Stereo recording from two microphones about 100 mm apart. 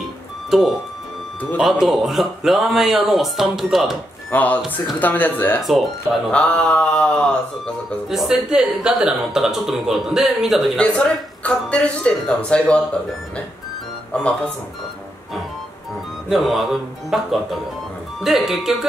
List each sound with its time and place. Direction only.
0.5 s speech: centre (ahead or behind)
4.3 s speech: 15° left (ahead or behind)
5.6 s speech: centre (ahead or behind)
6.3 s speech: 10° left (ahead or behind)
8.1 s speech: 5° right (ahead or behind)
10.8 s speech: 10° left (ahead or behind)
14.1 s speech: 10° left (ahead or behind)
16.3 s speech: centre (ahead or behind)